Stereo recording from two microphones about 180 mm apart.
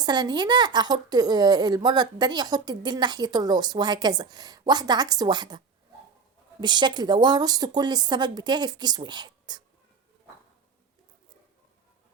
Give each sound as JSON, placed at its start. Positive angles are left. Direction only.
{"t": 0.0, "sound": "a woman's voice", "side_deg": -25}